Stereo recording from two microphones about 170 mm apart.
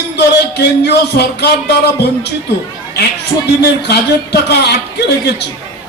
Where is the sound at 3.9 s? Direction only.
75° left (ahead or behind).